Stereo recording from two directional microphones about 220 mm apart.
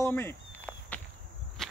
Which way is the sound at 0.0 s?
10° left (ahead or behind).